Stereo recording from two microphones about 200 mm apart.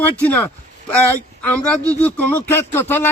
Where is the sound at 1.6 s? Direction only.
5° left (ahead or behind).